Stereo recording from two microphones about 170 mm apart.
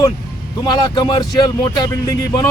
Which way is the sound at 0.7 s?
25° left (ahead or behind).